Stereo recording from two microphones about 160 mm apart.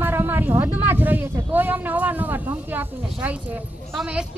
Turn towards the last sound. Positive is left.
turn(degrees=-5)  # may be behind; listen again after turning